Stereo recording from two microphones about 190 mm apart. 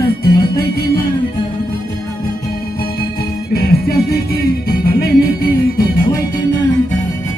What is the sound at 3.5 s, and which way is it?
Music, 55° left (ahead or behind).